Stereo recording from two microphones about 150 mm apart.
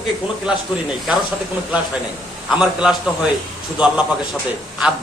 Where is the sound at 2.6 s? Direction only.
5° right (ahead or behind).